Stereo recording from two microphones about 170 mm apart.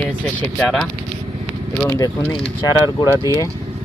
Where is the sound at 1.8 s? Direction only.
15° left (ahead or behind).